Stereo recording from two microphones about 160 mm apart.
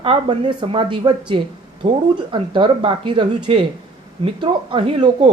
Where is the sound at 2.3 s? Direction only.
30° right (ahead or behind).